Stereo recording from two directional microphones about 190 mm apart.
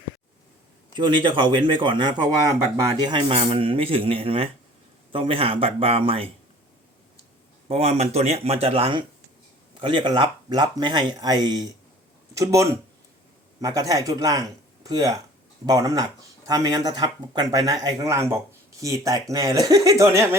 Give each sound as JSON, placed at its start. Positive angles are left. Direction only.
{"t": 0.9, "sound": "speech", "side_deg": -25}
{"t": 7.7, "sound": "speech", "side_deg": -35}